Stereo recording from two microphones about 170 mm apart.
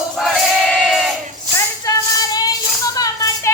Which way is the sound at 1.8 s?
20° left (ahead or behind).